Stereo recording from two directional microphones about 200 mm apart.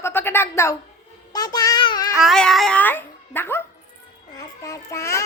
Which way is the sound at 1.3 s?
20° left (ahead or behind).